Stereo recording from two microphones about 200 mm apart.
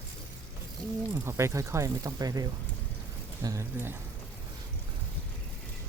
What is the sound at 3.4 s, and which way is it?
Speech, 15° right (ahead or behind).